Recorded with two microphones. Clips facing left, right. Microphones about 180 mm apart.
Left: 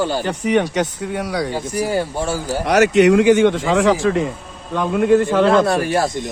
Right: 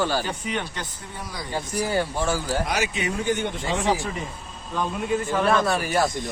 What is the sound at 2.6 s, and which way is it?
Speech, 70° left (ahead or behind).